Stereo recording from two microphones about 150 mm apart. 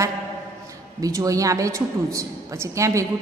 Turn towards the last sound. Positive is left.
turn(degrees=-20)  # may be behind; listen again after turning